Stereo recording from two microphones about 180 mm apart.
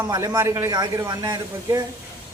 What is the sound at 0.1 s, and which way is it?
A man's voice, 20° right (ahead or behind).